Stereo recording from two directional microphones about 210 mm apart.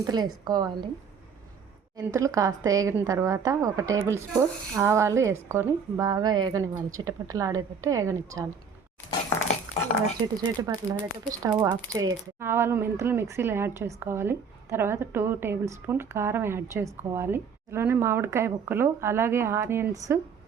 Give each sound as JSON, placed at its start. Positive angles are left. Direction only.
{"t": 0.0, "sound": "speech", "side_deg": -20}
{"t": 2.0, "sound": "speech", "side_deg": -15}
{"t": 10.4, "sound": "speech", "side_deg": -20}